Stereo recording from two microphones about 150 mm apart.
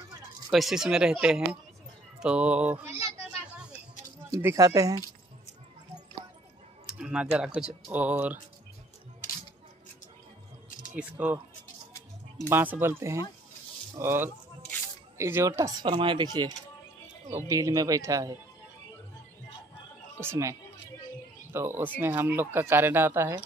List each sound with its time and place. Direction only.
0.5 s speech: centre (ahead or behind)
4.4 s speech: 20° right (ahead or behind)
6.9 s speech: 5° right (ahead or behind)
11.0 s speech: 10° right (ahead or behind)
12.4 s speech: 15° right (ahead or behind)
15.8 s speech: 35° right (ahead or behind)
20.2 s speech: 20° right (ahead or behind)